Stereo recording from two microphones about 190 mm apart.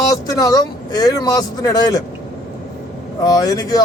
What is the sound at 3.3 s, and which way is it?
Speech, 20° left (ahead or behind).